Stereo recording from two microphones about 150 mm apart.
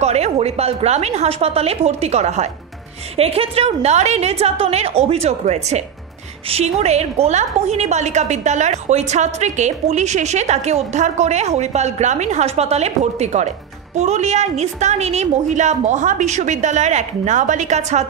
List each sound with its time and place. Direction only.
0.0 s a woman's voice: 45° right (ahead or behind)